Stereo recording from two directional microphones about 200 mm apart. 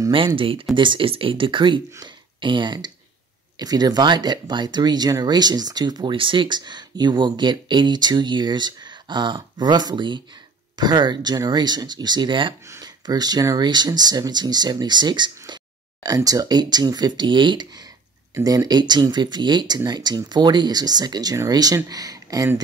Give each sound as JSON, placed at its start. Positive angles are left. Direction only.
{"t": 0.0, "sound": "speech", "side_deg": -25}